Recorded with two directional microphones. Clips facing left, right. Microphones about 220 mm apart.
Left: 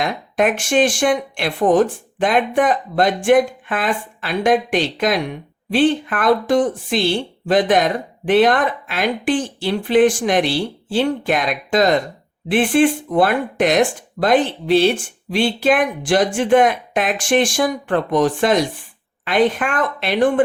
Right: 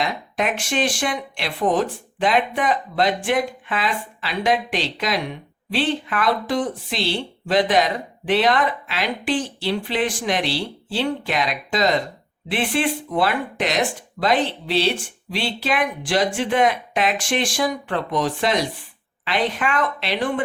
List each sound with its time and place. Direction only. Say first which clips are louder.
0.0 s speech: left 5 dB; 50° left (ahead or behind)